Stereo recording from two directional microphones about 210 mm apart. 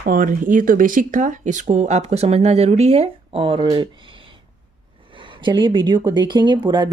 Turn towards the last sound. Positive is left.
turn(degrees=-20)  # may be behind; listen again after turning